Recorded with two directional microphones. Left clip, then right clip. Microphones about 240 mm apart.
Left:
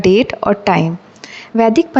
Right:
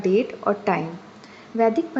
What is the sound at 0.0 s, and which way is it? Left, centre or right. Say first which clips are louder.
A woman's voice: left 9 dB; left.